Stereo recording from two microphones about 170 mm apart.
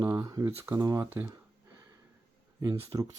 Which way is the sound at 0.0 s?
20° right (ahead or behind).